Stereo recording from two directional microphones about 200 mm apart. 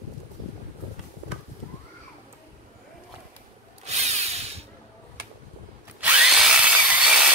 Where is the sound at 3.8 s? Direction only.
35° right (ahead or behind).